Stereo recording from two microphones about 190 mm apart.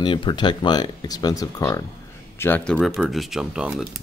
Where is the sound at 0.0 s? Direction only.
25° left (ahead or behind); by 3.8 s 5° right (ahead or behind).